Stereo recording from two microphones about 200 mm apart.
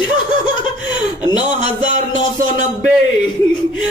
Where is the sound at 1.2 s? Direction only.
20° left (ahead or behind).